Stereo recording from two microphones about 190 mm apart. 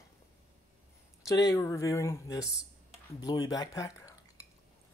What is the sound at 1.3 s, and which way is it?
Speech, 20° left (ahead or behind).